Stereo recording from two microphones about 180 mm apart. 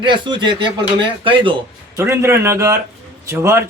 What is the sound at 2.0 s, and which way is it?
Speech, 15° right (ahead or behind).